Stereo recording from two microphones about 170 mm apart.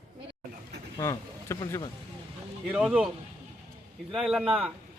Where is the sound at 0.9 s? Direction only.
20° left (ahead or behind).